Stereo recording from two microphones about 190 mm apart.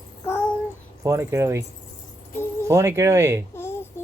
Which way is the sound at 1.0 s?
15° right (ahead or behind).